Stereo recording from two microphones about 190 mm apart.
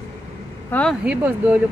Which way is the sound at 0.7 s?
5° left (ahead or behind).